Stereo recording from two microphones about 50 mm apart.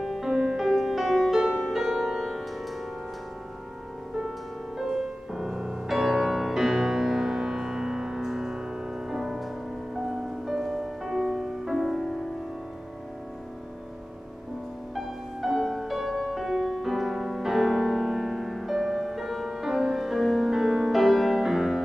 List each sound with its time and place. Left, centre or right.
0.0 s music: centre
4.7 s music: centre
15.0 s music: centre